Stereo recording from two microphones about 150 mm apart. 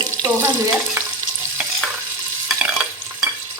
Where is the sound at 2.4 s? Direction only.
Centre (ahead or behind).